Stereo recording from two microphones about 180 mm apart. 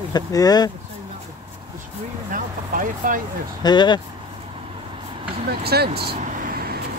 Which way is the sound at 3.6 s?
25° left (ahead or behind).